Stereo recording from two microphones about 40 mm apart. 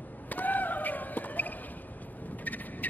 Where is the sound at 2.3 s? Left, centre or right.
Left.